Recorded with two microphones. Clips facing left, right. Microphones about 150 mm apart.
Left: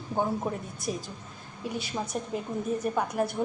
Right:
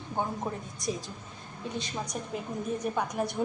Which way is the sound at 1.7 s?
10° left (ahead or behind).